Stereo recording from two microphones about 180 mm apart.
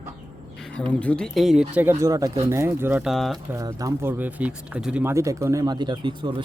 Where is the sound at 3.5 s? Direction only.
20° right (ahead or behind).